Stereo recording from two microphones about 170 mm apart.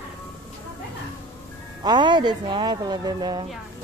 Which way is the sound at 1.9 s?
25° right (ahead or behind).